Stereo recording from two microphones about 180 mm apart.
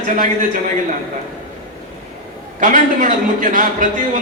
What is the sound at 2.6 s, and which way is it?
A man's voice, 45° right (ahead or behind).